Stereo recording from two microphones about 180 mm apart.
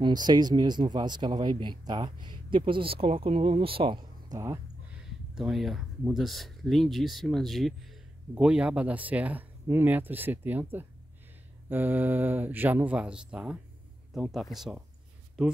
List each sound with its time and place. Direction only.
0.0 s speech: 25° right (ahead or behind)
4.9 s speech: 5° right (ahead or behind)